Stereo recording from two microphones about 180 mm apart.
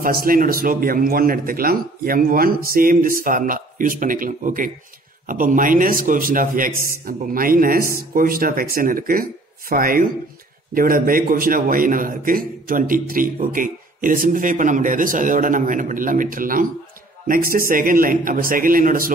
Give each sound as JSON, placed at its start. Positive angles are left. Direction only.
{"t": 0.0, "sound": "a man's voice", "side_deg": -55}